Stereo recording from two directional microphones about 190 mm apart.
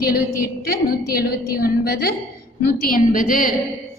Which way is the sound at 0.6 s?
55° left (ahead or behind).